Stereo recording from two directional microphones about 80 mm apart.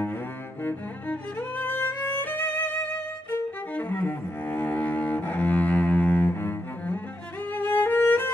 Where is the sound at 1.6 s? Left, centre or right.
Left.